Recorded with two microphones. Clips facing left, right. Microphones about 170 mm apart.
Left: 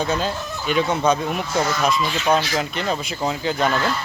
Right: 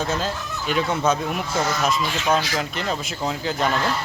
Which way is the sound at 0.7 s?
5° right (ahead or behind).